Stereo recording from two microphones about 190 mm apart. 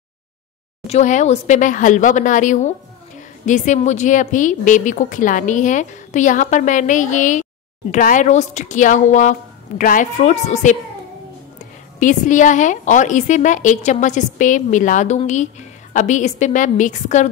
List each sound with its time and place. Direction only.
0.8 s a woman's voice: 40° left (ahead or behind)
12.0 s a woman's voice: 40° left (ahead or behind)